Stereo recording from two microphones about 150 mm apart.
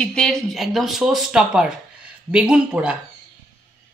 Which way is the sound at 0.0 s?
5° left (ahead or behind).